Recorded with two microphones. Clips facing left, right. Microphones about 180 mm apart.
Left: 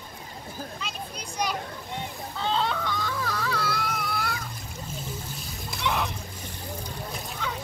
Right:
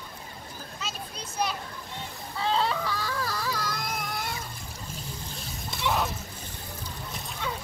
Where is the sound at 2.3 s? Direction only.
5° right (ahead or behind).